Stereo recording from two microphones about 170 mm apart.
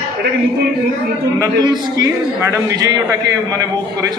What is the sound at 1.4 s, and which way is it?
A man's voice, 20° right (ahead or behind).